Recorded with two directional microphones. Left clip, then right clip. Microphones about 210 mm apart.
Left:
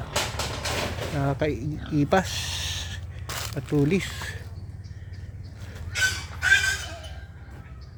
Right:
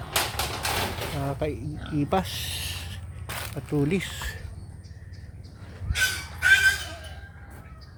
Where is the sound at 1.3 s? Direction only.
25° left (ahead or behind).